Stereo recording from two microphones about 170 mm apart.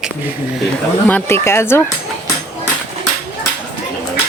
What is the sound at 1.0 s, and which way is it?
Speech, 10° left (ahead or behind).